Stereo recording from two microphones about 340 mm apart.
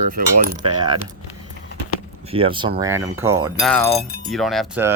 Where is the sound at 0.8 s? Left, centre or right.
Centre.